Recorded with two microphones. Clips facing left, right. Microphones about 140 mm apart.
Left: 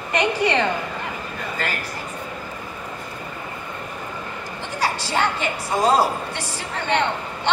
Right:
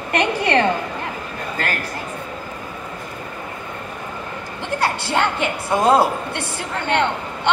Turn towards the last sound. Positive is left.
turn(degrees=-60)  # may be behind; listen again after turning